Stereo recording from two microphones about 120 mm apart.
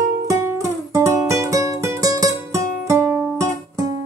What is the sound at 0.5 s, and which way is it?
Music, 25° right (ahead or behind).